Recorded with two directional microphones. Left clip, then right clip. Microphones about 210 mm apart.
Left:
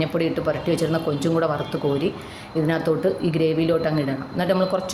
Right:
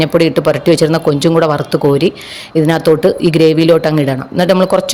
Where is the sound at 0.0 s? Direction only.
50° right (ahead or behind).